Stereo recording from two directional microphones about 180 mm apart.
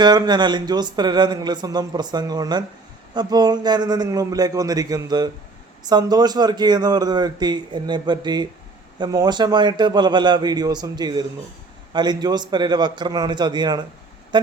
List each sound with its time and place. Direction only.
0.0 s speech: 25° right (ahead or behind)